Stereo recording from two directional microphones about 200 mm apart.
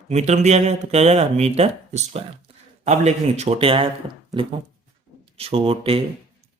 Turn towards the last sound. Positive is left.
turn(degrees=-30)  # may be behind; listen again after turning